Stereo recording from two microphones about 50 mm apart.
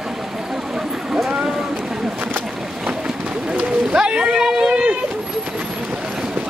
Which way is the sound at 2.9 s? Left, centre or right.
Centre.